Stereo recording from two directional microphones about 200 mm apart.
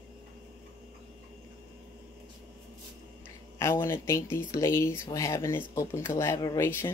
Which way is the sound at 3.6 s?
15° left (ahead or behind).